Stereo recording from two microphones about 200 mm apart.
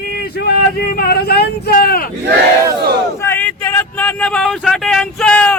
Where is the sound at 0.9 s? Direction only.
50° left (ahead or behind).